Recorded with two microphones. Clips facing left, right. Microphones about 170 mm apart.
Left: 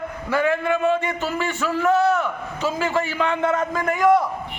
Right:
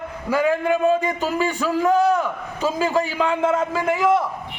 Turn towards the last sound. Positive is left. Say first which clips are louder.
# left 1 dB
turn(degrees=-5)  # may be behind; listen again after turning